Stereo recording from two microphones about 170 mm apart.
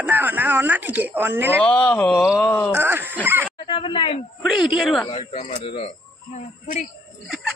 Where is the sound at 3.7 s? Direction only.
30° left (ahead or behind).